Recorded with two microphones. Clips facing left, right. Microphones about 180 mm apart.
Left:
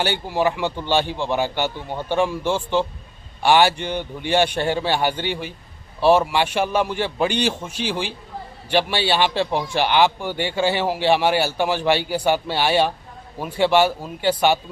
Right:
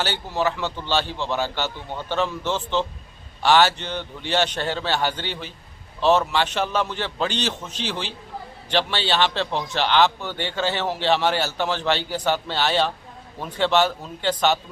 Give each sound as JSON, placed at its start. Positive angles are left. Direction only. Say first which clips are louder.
{"t": 0.0, "sound": "a man's voice", "louder": "left 3 dB", "side_deg": 15}